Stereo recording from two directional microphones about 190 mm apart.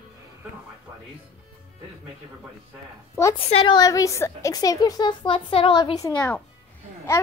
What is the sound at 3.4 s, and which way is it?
A woman's voice, 30° left (ahead or behind).